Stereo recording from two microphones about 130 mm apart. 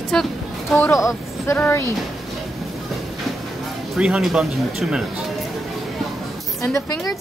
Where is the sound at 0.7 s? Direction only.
20° left (ahead or behind).